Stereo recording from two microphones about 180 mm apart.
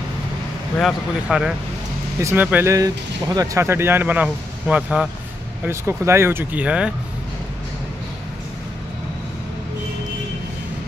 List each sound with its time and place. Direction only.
0.7 s a man's voice: 5° right (ahead or behind)
2.1 s speech: 15° right (ahead or behind)